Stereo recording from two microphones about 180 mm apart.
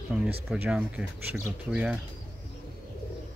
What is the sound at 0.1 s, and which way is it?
Speech, 5° right (ahead or behind).